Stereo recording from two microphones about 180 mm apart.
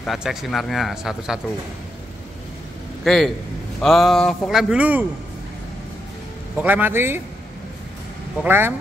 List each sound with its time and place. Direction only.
0.0 s speech: centre (ahead or behind)
3.0 s a man's voice: centre (ahead or behind)
6.6 s a man's voice: 10° right (ahead or behind)
8.4 s a man's voice: 10° right (ahead or behind)